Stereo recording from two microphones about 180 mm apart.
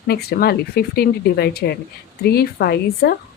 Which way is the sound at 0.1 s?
60° left (ahead or behind).